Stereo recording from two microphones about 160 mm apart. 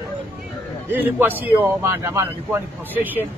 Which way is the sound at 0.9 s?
10° right (ahead or behind).